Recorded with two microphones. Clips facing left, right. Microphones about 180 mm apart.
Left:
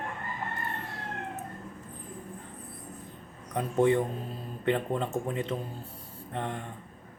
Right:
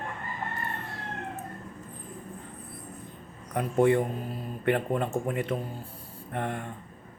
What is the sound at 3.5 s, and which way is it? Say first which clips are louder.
Speech: right 2 dB; 20° left (ahead or behind).